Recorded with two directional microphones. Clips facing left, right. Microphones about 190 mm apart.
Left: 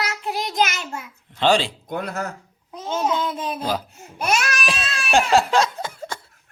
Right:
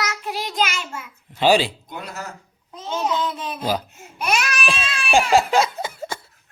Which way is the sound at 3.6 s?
5° right (ahead or behind).